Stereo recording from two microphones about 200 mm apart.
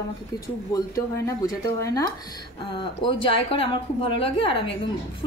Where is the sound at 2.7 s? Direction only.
25° left (ahead or behind).